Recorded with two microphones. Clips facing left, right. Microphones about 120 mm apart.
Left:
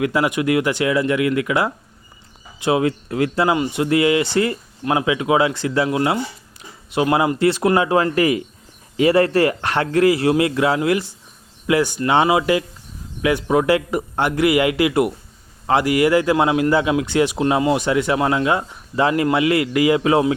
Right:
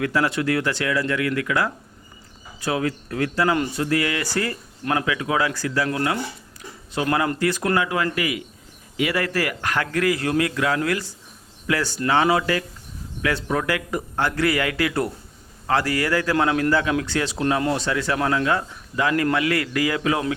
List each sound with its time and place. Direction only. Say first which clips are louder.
0.0 s speech: left 3 dB; 15° left (ahead or behind)
6.6 s a sound: left 6 dB; 20° left (ahead or behind)
7.3 s speech: left 5 dB; 25° left (ahead or behind)
17.6 s speech: left 5 dB; 10° left (ahead or behind)
17.8 s speech: left 5 dB; 20° left (ahead or behind)